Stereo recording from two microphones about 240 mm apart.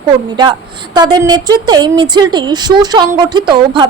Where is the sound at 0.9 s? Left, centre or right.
Centre.